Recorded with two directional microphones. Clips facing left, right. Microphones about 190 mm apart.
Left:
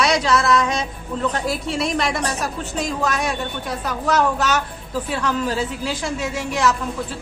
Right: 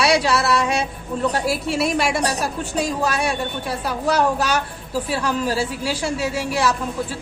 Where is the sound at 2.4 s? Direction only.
10° right (ahead or behind).